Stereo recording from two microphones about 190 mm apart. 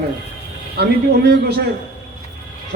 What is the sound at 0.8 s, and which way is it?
Speech, 60° right (ahead or behind).